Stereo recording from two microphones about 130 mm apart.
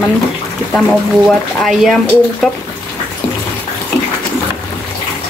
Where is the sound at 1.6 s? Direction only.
Centre (ahead or behind).